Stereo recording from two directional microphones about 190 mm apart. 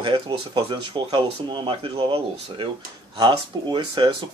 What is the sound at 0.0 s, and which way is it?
Speech, 25° right (ahead or behind).